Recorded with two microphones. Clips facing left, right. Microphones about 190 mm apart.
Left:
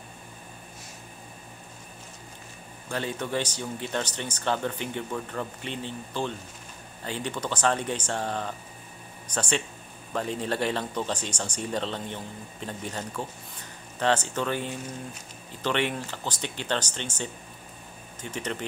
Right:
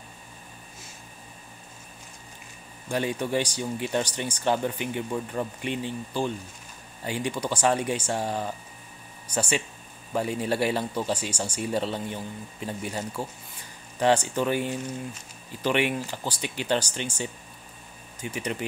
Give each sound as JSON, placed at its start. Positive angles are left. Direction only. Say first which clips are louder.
{"t": 2.9, "sound": "speech", "louder": "right 3 dB", "side_deg": -15}